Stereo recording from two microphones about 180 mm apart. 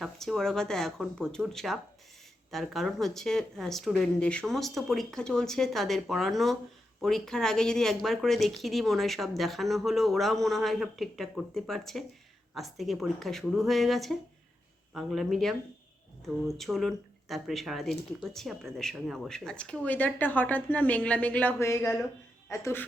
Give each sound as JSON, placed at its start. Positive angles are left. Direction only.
{"t": 0.0, "sound": "speech", "side_deg": 0}